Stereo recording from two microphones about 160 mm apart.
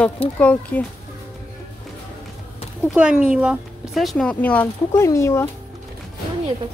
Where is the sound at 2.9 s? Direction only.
5° right (ahead or behind); by 5.4 s 15° left (ahead or behind).